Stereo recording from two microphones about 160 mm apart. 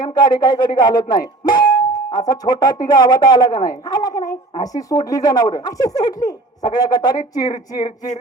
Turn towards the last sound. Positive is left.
turn(degrees=25)  # may be behind; listen again after turning